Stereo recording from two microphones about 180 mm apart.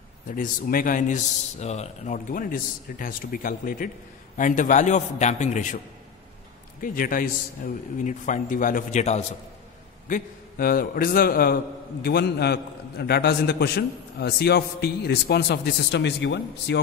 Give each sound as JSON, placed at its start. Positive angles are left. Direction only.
{"t": 0.3, "sound": "a man's voice", "side_deg": 50}
{"t": 6.8, "sound": "a man's voice", "side_deg": 50}